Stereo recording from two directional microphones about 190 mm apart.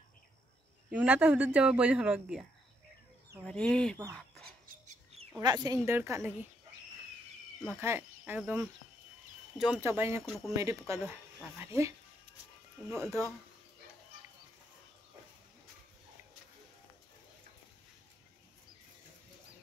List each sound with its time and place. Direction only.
0.8 s speech: 5° right (ahead or behind)
3.4 s speech: 5° left (ahead or behind)
5.4 s speech: 20° right (ahead or behind)
7.7 s speech: 10° right (ahead or behind)
10.2 s speech: centre (ahead or behind)
10.5 s speech: 15° right (ahead or behind)
12.9 s speech: 15° right (ahead or behind)